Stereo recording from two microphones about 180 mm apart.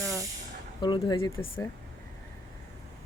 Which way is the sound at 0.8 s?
25° left (ahead or behind).